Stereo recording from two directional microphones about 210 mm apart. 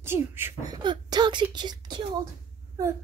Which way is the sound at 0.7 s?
20° right (ahead or behind).